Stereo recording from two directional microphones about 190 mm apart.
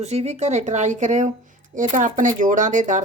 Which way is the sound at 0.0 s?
35° right (ahead or behind).